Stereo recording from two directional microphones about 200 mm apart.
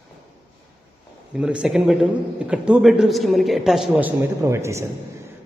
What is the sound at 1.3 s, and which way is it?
A man's voice, 5° right (ahead or behind).